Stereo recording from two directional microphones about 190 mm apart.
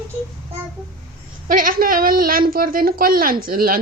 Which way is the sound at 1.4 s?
45° right (ahead or behind).